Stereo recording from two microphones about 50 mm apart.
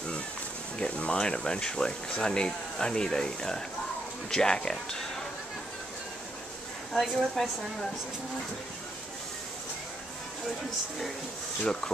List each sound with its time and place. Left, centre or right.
0.7 s speech: left
7.4 s speech: centre
11.6 s speech: centre